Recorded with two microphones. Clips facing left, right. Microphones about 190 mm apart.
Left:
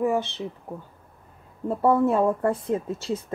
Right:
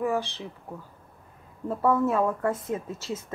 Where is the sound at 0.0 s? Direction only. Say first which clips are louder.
Left 3 dB; 20° left (ahead or behind).